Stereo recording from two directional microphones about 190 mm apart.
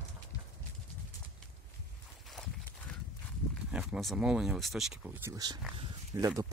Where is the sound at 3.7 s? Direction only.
Centre (ahead or behind).